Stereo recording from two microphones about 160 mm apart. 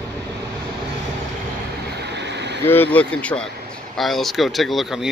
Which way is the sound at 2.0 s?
90° right.